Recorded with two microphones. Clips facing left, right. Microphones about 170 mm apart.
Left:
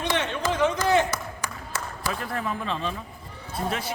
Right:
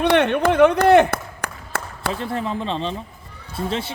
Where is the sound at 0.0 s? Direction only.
60° right (ahead or behind).